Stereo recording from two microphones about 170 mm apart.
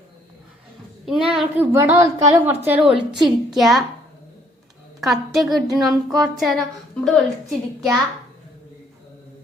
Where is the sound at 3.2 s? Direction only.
Centre (ahead or behind).